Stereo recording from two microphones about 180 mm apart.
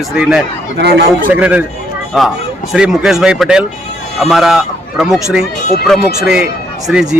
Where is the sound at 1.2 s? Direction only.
10° right (ahead or behind).